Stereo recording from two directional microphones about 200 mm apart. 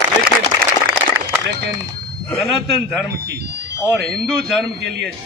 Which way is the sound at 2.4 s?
Centre (ahead or behind).